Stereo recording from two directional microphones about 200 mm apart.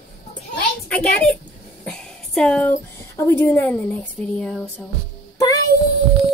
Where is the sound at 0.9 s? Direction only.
5° left (ahead or behind).